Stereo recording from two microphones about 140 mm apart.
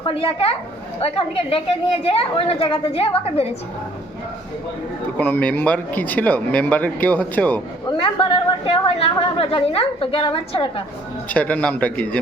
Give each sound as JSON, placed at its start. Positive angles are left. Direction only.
{"t": 0.0, "sound": "a woman's voice", "side_deg": 40}
{"t": 5.1, "sound": "speech", "side_deg": 10}
{"t": 7.9, "sound": "a woman's voice", "side_deg": 40}
{"t": 11.3, "sound": "speech", "side_deg": 10}